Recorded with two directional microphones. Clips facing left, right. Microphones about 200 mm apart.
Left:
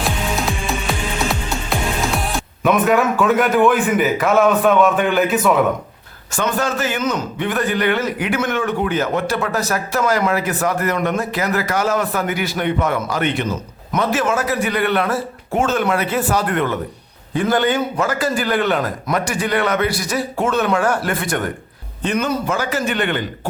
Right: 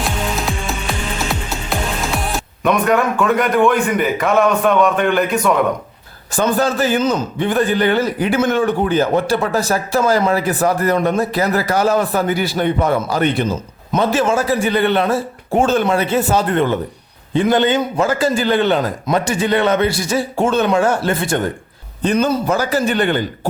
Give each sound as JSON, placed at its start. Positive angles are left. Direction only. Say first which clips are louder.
{"t": 0.0, "sound": "music", "louder": "even", "side_deg": 0}
{"t": 1.3, "sound": "speech", "louder": "even", "side_deg": 0}
{"t": 6.3, "sound": "a man's voice", "louder": "right 4 dB", "side_deg": -35}